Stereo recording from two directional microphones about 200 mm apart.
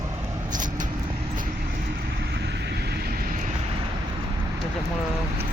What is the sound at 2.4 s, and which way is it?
Vehicle, 60° right (ahead or behind).